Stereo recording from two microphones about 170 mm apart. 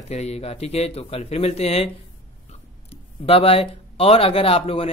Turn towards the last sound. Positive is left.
turn(degrees=35)  # may be behind; listen again after turning